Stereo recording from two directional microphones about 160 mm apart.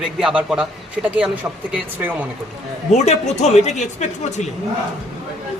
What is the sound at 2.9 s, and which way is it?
Speech, 45° left (ahead or behind).